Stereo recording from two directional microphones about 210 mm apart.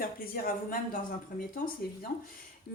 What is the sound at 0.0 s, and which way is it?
Speech, 40° left (ahead or behind).